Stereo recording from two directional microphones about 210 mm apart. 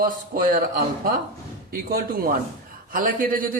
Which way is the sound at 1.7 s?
45° right (ahead or behind).